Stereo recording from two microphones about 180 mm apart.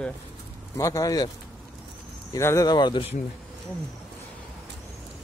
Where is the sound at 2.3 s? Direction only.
15° left (ahead or behind).